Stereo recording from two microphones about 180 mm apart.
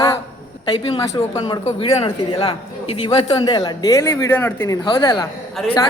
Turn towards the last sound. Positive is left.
turn(degrees=5)  # may be behind; listen again after turning